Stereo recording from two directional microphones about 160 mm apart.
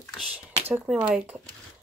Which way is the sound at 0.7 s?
10° right (ahead or behind).